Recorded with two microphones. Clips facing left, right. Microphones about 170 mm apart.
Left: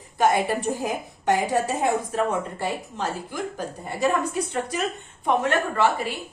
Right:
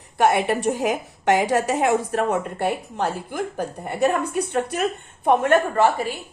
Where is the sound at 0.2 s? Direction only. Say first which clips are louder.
Right 2 dB; 70° right (ahead or behind); by 5.9 s 50° right (ahead or behind).